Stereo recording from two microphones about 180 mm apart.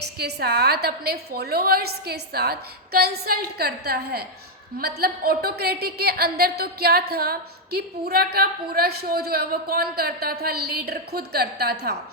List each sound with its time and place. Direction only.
0.2 s a woman's voice: 65° right (ahead or behind)